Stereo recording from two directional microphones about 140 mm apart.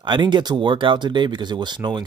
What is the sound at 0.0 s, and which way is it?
Speech, 35° right (ahead or behind).